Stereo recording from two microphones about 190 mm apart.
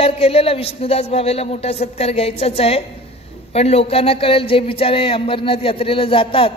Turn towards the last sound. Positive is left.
turn(degrees=30)  # may be behind; listen again after turning